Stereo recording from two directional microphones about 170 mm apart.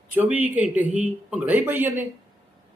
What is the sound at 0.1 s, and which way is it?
A man's voice, 10° right (ahead or behind).